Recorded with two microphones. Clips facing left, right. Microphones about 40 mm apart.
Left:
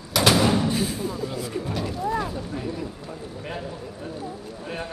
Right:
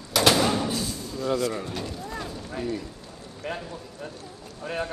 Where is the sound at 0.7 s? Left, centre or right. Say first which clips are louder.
Left 5 dB; left.